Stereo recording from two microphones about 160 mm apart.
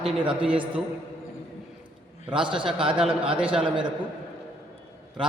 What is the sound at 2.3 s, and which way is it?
Speech, 30° right (ahead or behind).